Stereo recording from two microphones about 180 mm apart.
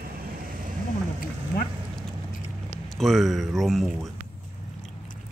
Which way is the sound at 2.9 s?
Centre (ahead or behind).